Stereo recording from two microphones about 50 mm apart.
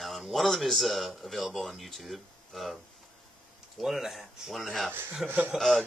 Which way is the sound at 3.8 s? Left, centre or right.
Centre.